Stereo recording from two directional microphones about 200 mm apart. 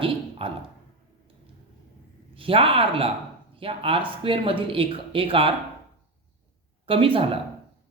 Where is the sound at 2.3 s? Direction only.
25° right (ahead or behind).